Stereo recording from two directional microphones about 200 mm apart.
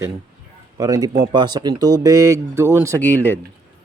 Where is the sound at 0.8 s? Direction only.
20° right (ahead or behind).